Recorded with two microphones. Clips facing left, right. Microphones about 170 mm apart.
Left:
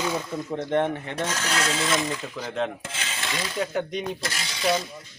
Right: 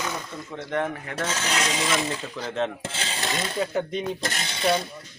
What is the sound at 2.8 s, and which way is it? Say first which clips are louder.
Mechanisms: right 3 dB; 30° right (ahead or behind).